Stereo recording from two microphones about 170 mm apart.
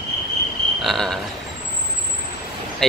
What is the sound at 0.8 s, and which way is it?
Speech, centre (ahead or behind).